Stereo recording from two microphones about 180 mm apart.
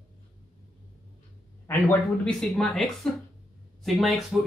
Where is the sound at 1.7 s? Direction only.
10° left (ahead or behind).